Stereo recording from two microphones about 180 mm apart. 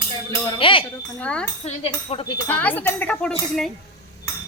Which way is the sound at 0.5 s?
30° left (ahead or behind).